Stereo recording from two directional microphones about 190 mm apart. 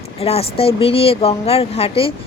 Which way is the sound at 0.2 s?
30° left (ahead or behind).